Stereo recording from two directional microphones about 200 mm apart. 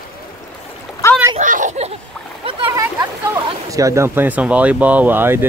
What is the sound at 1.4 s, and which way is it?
Speech, 40° right (ahead or behind).